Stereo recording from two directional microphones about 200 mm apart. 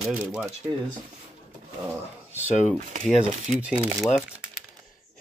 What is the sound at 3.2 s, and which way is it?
Speech, 5° right (ahead or behind).